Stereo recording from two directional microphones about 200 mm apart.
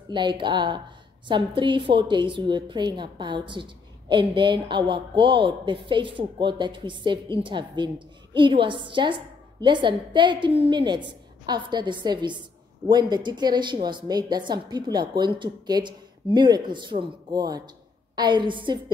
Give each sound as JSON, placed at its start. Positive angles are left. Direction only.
{"t": 0.1, "sound": "a woman's voice", "side_deg": -25}